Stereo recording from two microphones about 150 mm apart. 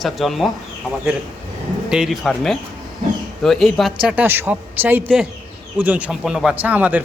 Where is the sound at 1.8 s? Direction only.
5° right (ahead or behind).